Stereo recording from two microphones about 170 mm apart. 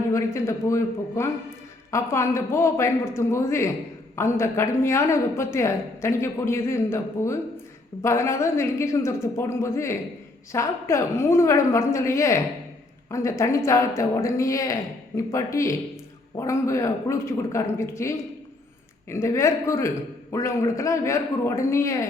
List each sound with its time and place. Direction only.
0.1 s a man's voice: 15° left (ahead or behind)
19.1 s a woman's voice: 15° left (ahead or behind)